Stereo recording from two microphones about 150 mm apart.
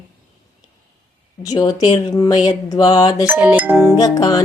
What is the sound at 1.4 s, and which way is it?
Speech, 25° left (ahead or behind).